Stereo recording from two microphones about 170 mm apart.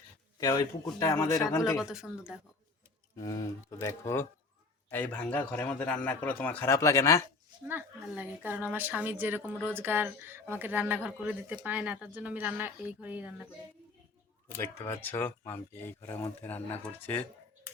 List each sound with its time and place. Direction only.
0.3 s speech: 20° left (ahead or behind)
1.7 s speech: 5° right (ahead or behind)
3.2 s a man's voice: 20° left (ahead or behind)
7.7 s speech: 10° right (ahead or behind)
14.6 s a man's voice: 15° left (ahead or behind)